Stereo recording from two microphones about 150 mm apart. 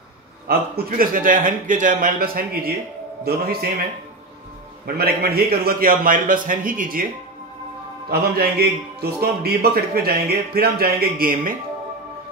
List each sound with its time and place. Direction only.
0.5 s a man's voice: 80° right
4.8 s a man's voice: 90° right; by 7.1 s 65° right (ahead or behind)
8.1 s a man's voice: 90° right; by 11.5 s 75° right (ahead or behind)